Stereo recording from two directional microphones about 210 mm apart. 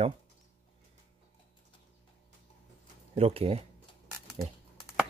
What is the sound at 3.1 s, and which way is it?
Speech, 30° right (ahead or behind).